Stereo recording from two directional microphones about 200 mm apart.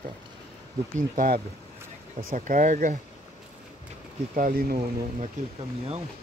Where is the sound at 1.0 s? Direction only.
45° right (ahead or behind).